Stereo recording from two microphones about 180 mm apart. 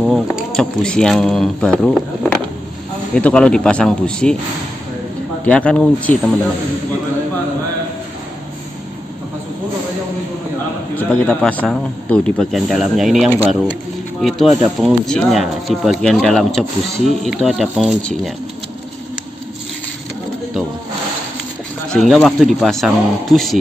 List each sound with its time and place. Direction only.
0.0 s speech: centre (ahead or behind)
3.2 s speech: 5° left (ahead or behind)
5.4 s speech: 5° left (ahead or behind)
11.0 s speech: 5° left (ahead or behind)
21.9 s speech: centre (ahead or behind)